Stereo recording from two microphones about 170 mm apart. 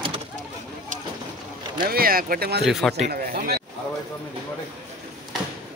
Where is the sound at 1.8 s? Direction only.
60° right (ahead or behind).